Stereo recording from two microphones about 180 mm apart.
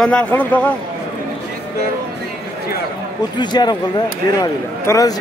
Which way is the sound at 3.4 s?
25° left (ahead or behind).